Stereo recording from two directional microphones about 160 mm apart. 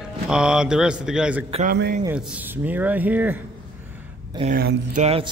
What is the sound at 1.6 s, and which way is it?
Speech, 70° right (ahead or behind).